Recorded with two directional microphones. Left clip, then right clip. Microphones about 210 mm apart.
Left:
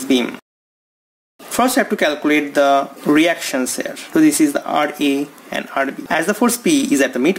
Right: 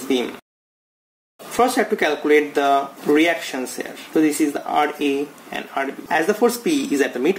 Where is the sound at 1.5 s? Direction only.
45° left (ahead or behind).